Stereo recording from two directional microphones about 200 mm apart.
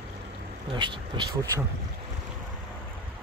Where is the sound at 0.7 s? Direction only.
25° right (ahead or behind).